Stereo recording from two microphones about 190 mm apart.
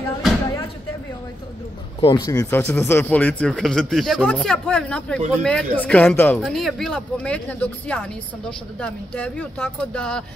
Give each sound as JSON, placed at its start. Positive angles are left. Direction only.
{"t": 2.0, "sound": "speech", "side_deg": 25}